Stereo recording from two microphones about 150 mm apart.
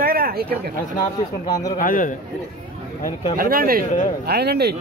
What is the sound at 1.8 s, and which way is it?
Speech, 65° left (ahead or behind).